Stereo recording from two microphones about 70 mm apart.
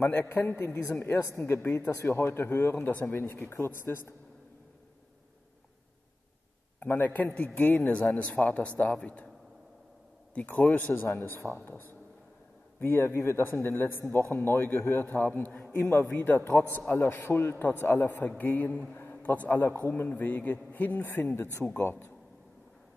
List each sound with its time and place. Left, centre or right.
0.0 s a man's voice: left
6.8 s a man's voice: left
10.3 s a man's voice: left